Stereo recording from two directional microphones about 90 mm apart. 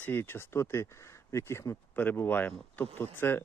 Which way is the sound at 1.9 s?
20° left (ahead or behind).